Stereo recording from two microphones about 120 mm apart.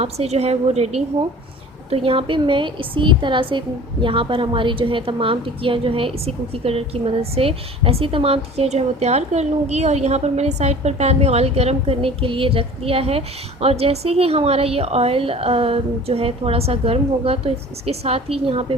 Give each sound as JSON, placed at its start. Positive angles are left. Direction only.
{"t": 0.0, "sound": "a woman's voice", "side_deg": -60}
{"t": 1.9, "sound": "a woman's voice", "side_deg": -50}